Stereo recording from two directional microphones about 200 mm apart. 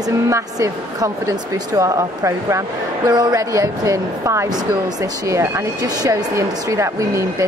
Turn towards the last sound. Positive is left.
turn(degrees=-15)  # may be behind; listen again after turning